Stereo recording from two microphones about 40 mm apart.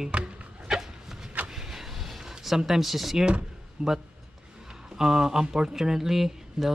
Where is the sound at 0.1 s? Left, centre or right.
Right.